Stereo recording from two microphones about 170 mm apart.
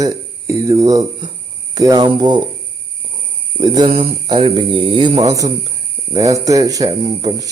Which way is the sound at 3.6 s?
30° right (ahead or behind).